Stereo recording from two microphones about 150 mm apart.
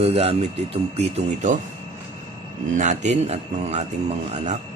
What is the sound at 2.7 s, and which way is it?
Speech, 55° right (ahead or behind).